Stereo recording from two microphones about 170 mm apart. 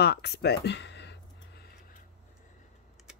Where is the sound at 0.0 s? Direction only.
75° left (ahead or behind).